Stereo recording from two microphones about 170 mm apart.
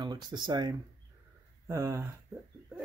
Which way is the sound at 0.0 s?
25° right (ahead or behind).